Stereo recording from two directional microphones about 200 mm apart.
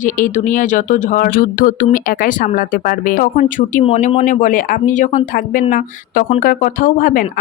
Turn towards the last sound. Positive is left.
turn(degrees=45)  # may be behind; listen again after turning